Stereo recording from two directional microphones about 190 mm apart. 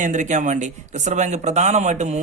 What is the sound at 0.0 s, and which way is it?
Speech, 40° right (ahead or behind).